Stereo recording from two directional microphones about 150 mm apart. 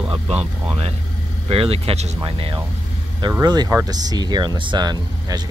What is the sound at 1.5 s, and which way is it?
Speech, 40° right (ahead or behind).